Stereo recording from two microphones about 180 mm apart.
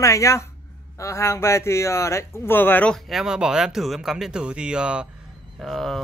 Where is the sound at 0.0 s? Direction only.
15° left (ahead or behind).